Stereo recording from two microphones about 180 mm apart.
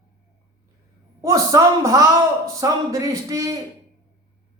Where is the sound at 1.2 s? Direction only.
15° right (ahead or behind).